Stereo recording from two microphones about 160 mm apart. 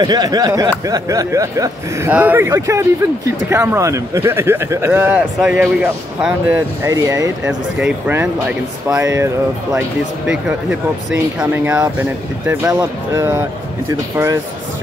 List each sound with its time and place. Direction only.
0.0 s speech: 25° right (ahead or behind)
7.8 s speech: 10° right (ahead or behind)
10.2 s speech: 5° right (ahead or behind)